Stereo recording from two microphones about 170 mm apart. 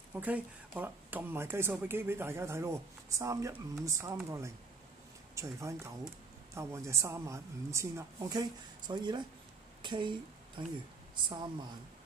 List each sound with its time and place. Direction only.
0.1 s speech: 10° right (ahead or behind)
5.3 s speech: 20° right (ahead or behind)
9.8 s a sound: 25° right (ahead or behind)
11.2 s speech: 25° right (ahead or behind)